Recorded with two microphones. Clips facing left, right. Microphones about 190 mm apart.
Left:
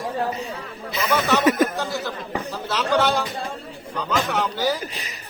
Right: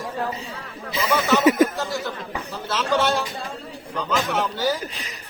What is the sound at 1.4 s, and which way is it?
Chuckle, 25° right (ahead or behind).